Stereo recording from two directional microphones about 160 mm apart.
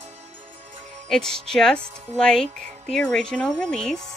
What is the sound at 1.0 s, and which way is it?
Speech, 5° left (ahead or behind).